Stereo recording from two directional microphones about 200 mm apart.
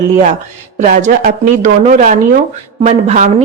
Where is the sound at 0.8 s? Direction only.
40° right (ahead or behind).